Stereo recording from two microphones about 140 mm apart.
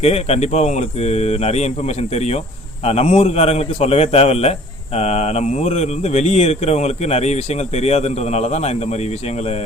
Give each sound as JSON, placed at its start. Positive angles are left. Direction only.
{"t": 0.0, "sound": "speech", "side_deg": 50}